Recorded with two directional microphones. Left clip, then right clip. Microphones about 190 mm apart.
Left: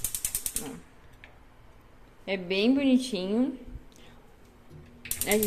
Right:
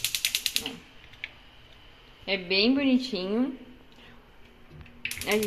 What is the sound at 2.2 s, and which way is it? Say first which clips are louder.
A woman's voice: right 2 dB; 15° left (ahead or behind).